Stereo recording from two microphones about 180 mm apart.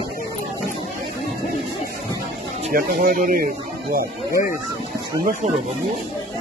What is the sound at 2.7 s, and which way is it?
Speech, 50° right (ahead or behind).